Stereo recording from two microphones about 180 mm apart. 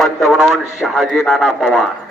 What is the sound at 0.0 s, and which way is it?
A man's voice, centre (ahead or behind).